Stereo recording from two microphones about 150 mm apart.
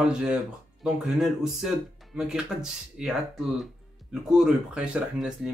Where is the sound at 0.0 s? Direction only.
5° right (ahead or behind).